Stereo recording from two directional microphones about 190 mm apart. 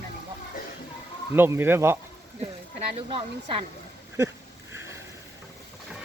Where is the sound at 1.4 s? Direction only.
10° right (ahead or behind).